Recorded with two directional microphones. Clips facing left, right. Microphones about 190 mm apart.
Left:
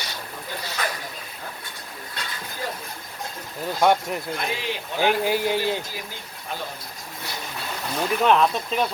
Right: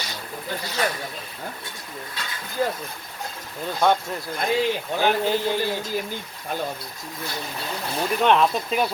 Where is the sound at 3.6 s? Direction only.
10° left (ahead or behind).